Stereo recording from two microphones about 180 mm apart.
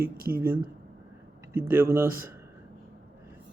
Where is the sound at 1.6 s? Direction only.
10° right (ahead or behind).